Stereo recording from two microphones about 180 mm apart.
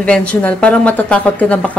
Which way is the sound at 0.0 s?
5° left (ahead or behind).